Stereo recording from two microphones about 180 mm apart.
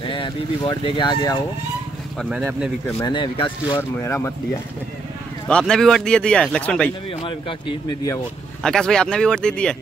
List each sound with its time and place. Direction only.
0.0 s speech: 25° left (ahead or behind)
2.1 s speech: 5° right (ahead or behind)
3.0 s speech: 25° left (ahead or behind)
4.0 s speech: 15° left (ahead or behind)
5.5 s speech: 5° left (ahead or behind)
7.2 s speech: 30° left (ahead or behind)
8.6 s speech: 5° left (ahead or behind)